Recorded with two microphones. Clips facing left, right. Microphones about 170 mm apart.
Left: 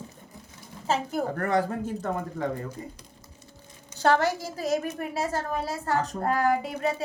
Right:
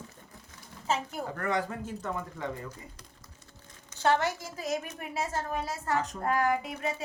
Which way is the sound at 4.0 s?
35° left (ahead or behind).